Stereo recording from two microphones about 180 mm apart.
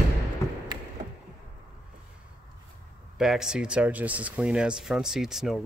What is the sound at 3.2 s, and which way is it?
Speech, 5° right (ahead or behind).